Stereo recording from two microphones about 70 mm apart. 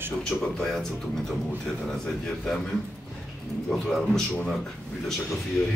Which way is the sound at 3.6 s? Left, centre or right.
Centre.